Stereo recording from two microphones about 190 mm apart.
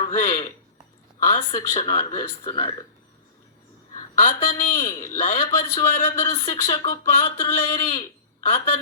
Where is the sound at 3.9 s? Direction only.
35° left (ahead or behind).